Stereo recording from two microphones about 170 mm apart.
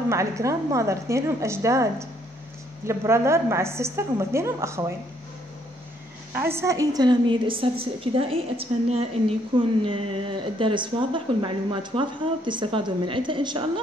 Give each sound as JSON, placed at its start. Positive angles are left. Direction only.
{"t": 0.1, "sound": "a woman's voice", "side_deg": -15}
{"t": 6.3, "sound": "a woman's voice", "side_deg": -15}